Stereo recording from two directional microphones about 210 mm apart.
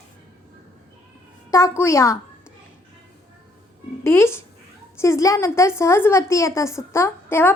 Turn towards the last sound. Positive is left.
turn(degrees=10)  # may be behind; listen again after turning